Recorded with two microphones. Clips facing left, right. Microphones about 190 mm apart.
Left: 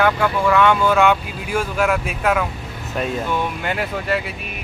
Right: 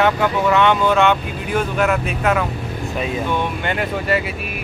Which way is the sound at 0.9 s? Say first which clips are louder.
Even; 5° left (ahead or behind).